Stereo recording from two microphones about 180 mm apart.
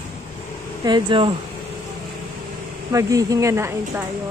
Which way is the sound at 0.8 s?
25° right (ahead or behind).